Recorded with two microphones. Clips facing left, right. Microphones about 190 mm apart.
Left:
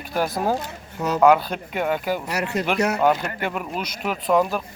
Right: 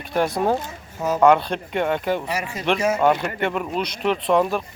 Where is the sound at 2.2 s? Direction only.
70° left (ahead or behind).